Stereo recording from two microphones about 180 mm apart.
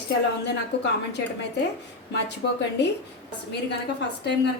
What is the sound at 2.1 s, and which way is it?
Speech, 70° left (ahead or behind).